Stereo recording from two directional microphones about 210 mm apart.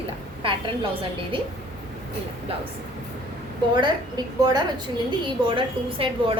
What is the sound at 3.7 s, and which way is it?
A woman's voice, 20° right (ahead or behind).